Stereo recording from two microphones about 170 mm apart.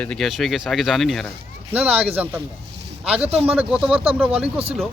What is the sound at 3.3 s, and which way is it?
Speech, 35° right (ahead or behind).